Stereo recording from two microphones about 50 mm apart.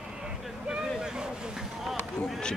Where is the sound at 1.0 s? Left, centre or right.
Centre.